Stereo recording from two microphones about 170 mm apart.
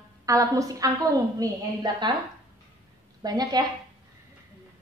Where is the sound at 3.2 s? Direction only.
20° right (ahead or behind).